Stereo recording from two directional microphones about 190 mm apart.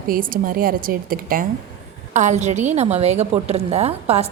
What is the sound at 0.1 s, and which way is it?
A woman's voice, 45° right (ahead or behind).